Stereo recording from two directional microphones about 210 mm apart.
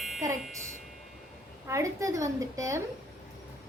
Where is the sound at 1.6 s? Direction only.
15° right (ahead or behind).